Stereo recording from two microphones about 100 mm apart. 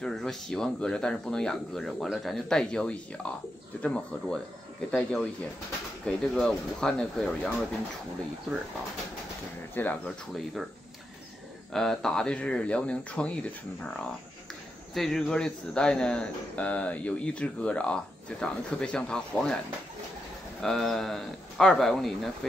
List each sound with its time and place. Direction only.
0.0 s speech: 5° left (ahead or behind)
10.0 s speech: centre (ahead or behind)
11.7 s speech: 5° left (ahead or behind)
15.0 s speech: 5° left (ahead or behind)
20.6 s speech: 5° left (ahead or behind)